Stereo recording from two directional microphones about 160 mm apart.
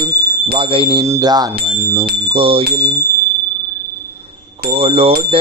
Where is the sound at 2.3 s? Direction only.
35° right (ahead or behind).